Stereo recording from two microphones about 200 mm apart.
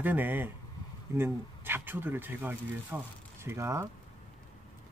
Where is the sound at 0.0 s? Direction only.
10° right (ahead or behind).